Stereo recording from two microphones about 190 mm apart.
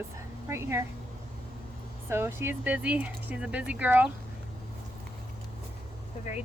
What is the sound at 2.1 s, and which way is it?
Speech, 10° right (ahead or behind).